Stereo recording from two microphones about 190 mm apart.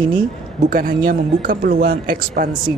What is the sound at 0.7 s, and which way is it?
Speech, 50° right (ahead or behind).